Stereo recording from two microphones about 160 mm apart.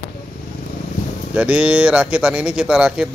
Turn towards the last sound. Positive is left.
turn(degrees=-5)  # may be behind; listen again after turning